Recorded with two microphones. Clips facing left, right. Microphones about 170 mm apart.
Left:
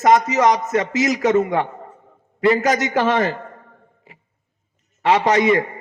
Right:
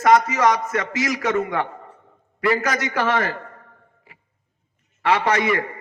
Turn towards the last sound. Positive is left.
turn(degrees=20)  # may be behind; listen again after turning